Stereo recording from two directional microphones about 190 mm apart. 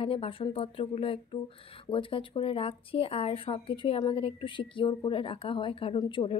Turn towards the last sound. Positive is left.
turn(degrees=25)  # may be behind; listen again after turning